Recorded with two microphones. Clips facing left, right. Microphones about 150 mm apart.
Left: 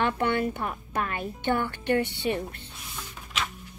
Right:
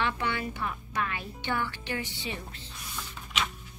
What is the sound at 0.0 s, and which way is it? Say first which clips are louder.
Speech: left 6 dB; 50° left (ahead or behind).